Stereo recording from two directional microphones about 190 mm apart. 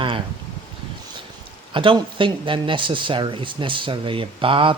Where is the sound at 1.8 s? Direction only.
25° right (ahead or behind).